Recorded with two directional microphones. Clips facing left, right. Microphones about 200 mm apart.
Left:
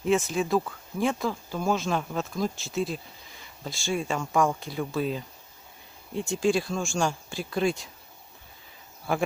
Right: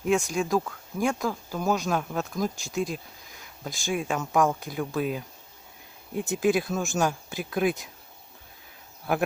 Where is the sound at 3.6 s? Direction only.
15° right (ahead or behind).